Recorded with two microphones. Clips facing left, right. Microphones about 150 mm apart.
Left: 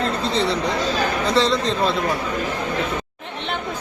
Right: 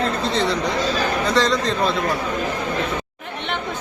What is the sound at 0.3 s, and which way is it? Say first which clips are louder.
A man's voice: left 1 dB; 30° left (ahead or behind).